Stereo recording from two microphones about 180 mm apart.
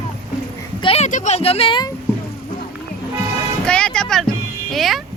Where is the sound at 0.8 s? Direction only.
40° left (ahead or behind).